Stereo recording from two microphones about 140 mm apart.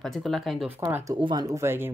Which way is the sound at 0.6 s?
15° right (ahead or behind).